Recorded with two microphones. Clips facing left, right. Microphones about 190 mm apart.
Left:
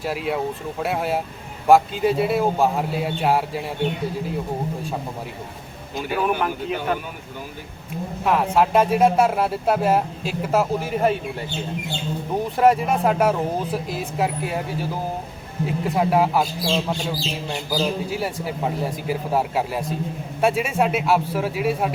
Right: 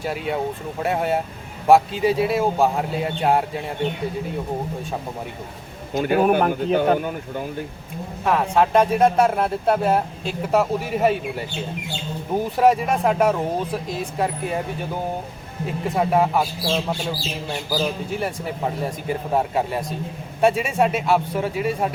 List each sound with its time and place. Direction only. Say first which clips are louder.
0.0 s speech: even; centre (ahead or behind)
5.9 s speech: right 6 dB; 55° right (ahead or behind)
8.2 s speech: even; 5° left (ahead or behind)
12.3 s speech: even; centre (ahead or behind)